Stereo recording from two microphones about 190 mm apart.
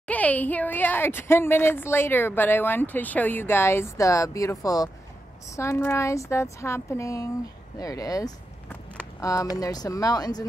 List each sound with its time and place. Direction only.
0.1 s a woman's voice: 10° left (ahead or behind)